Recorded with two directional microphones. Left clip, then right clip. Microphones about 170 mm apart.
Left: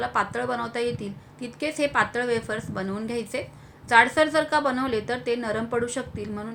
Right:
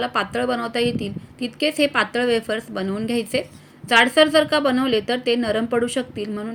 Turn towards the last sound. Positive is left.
turn(degrees=-35)  # may be behind; listen again after turning